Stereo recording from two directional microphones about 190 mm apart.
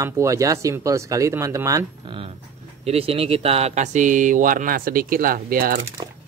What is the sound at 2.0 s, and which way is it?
Speech, 30° right (ahead or behind).